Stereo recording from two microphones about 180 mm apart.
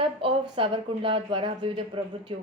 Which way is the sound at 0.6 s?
30° right (ahead or behind).